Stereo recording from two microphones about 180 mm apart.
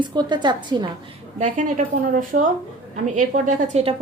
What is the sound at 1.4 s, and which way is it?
A woman's voice, 45° right (ahead or behind).